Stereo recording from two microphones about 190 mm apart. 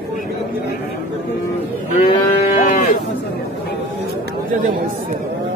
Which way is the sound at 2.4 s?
40° left (ahead or behind).